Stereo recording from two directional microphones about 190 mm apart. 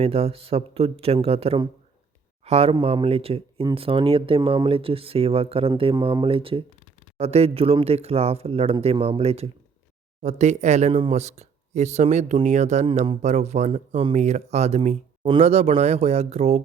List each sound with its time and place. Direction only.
0.0 s speech: 30° right (ahead or behind)